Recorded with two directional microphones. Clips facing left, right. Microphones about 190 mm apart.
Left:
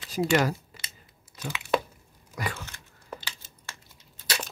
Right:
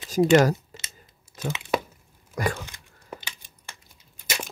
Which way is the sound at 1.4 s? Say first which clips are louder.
Right 6 dB; 45° right (ahead or behind).